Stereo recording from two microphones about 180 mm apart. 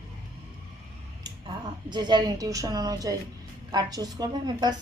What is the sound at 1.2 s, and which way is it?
A woman's voice, 25° right (ahead or behind).